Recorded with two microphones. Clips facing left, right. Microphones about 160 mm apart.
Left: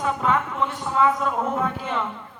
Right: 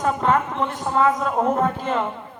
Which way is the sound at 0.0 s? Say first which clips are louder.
Right 3 dB; 45° right (ahead or behind).